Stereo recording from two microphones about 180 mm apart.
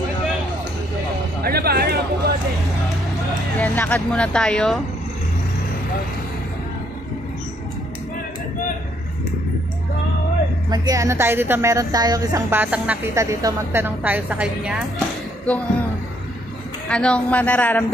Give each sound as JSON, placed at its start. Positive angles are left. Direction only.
{"t": 1.4, "sound": "music", "side_deg": -60}
{"t": 3.5, "sound": "speech", "side_deg": 10}
{"t": 10.7, "sound": "a woman's voice", "side_deg": -20}
{"t": 16.9, "sound": "speech", "side_deg": 5}